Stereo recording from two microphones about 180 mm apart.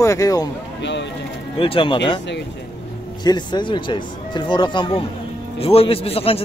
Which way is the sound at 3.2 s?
25° left (ahead or behind).